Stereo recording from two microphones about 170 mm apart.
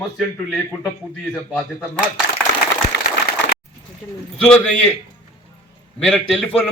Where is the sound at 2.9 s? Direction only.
90° left.